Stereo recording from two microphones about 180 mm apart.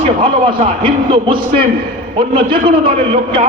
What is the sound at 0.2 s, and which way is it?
A man's voice, 30° right (ahead or behind).